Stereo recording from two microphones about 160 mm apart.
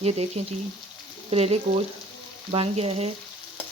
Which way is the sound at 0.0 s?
40° right (ahead or behind).